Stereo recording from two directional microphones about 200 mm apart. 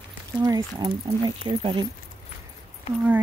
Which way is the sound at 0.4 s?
20° right (ahead or behind).